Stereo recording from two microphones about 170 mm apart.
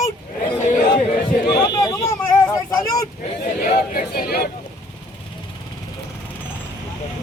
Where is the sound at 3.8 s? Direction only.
65° left (ahead or behind).